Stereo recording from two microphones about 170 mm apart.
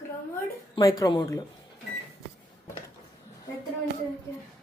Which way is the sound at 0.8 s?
20° left (ahead or behind).